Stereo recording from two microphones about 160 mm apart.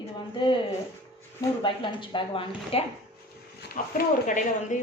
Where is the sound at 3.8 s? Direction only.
55° left (ahead or behind).